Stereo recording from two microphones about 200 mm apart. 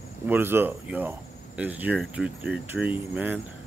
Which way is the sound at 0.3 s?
10° right (ahead or behind).